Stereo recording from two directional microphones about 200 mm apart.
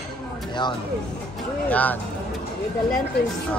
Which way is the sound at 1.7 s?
10° left (ahead or behind).